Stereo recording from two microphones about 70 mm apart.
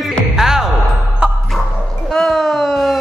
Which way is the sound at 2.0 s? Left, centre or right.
Centre.